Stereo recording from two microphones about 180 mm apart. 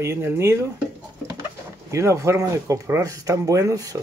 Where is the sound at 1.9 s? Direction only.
15° right (ahead or behind).